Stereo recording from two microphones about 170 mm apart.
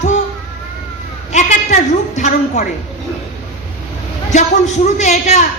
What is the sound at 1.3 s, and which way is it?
A woman's voice, 45° left (ahead or behind).